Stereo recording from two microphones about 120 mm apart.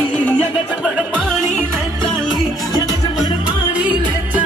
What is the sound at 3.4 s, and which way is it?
Music, 10° right (ahead or behind).